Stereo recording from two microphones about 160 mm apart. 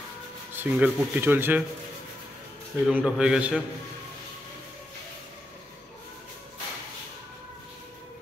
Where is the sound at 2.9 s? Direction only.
5° right (ahead or behind).